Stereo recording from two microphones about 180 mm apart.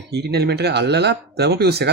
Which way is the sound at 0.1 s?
65° right (ahead or behind).